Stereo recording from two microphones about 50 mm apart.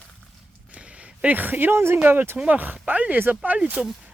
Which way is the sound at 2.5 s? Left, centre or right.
Right.